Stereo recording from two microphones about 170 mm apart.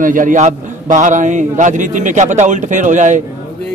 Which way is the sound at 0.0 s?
50° right (ahead or behind).